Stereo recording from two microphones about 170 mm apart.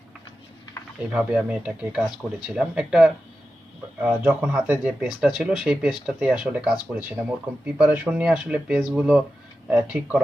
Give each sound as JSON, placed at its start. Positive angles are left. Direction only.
{"t": 1.1, "sound": "speech", "side_deg": -10}